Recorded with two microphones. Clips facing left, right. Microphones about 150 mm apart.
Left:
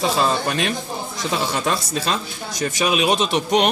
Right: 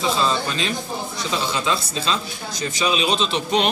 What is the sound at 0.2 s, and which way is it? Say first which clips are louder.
Speech: left 2 dB; 55° left (ahead or behind).